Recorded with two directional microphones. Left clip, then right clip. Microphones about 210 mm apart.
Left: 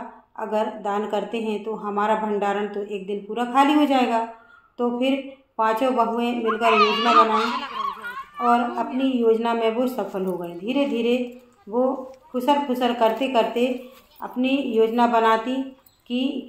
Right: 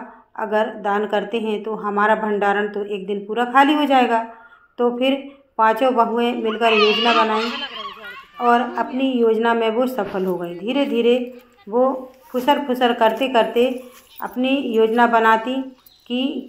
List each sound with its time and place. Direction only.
0.4 s a man's voice: 15° right (ahead or behind)